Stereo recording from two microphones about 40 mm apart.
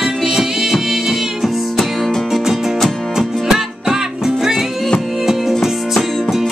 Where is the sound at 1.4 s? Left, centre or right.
Centre.